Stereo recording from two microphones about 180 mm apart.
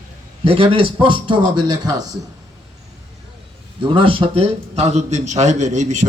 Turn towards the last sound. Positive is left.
turn(degrees=-40)  # may be behind; listen again after turning